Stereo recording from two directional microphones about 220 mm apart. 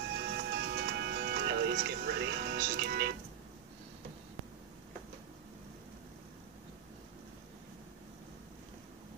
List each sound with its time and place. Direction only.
0.2 s music: 50° right (ahead or behind)